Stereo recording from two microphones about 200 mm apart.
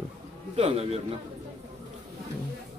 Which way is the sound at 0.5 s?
30° right (ahead or behind).